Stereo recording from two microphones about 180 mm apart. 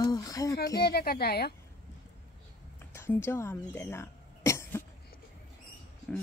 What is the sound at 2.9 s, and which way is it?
Cough, 15° left (ahead or behind).